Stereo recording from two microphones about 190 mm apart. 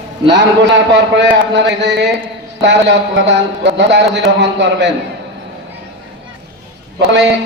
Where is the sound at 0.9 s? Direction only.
65° right (ahead or behind).